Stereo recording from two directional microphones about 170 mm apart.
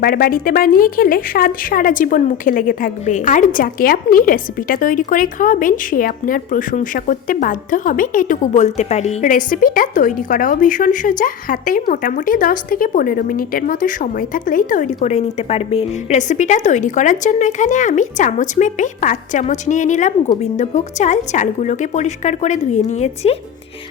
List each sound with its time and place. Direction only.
0.0 s speech: 60° left (ahead or behind); by 23.4 s 40° left (ahead or behind)